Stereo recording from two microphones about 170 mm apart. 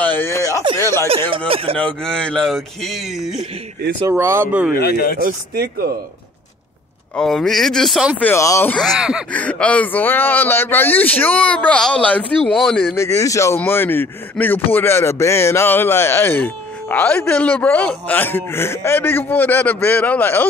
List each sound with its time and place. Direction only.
0.0 s a sound: 10° left (ahead or behind)
0.7 s speech: 15° left (ahead or behind)
1.5 s speech: 35° right (ahead or behind)
1.8 s speech: 5° left (ahead or behind)
4.0 s speech: 15° right (ahead or behind)
4.7 s speech: 65° left (ahead or behind)
5.2 s speech: 60° right (ahead or behind)
7.2 s speech: centre (ahead or behind)
8.2 s speech: 15° left (ahead or behind)
8.7 s speech: centre (ahead or behind)
9.3 s speech: 10° left (ahead or behind)
12.9 s speech: 15° left (ahead or behind)